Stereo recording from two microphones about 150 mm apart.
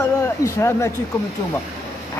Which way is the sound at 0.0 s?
20° left (ahead or behind).